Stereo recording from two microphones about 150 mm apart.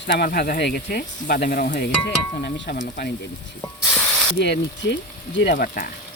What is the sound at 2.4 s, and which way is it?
Speech, 75° left (ahead or behind).